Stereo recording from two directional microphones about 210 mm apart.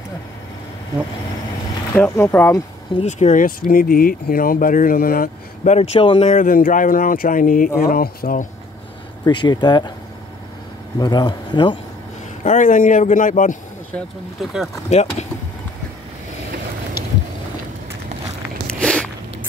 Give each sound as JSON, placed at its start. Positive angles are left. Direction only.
{"t": 2.0, "sound": "speech", "side_deg": 10}
{"t": 3.0, "sound": "speech", "side_deg": 35}
{"t": 9.2, "sound": "speech", "side_deg": 20}
{"t": 11.0, "sound": "speech", "side_deg": 20}
{"t": 12.4, "sound": "speech", "side_deg": 35}
{"t": 13.9, "sound": "speech", "side_deg": 0}
{"t": 14.9, "sound": "speech", "side_deg": 30}
{"t": 18.7, "sound": "a sound", "side_deg": 5}